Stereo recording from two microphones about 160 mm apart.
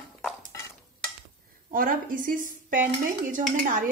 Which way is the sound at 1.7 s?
60° right (ahead or behind).